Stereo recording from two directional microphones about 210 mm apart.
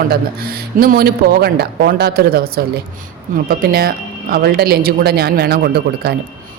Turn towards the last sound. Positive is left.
turn(degrees=-50)  # may be behind; listen again after turning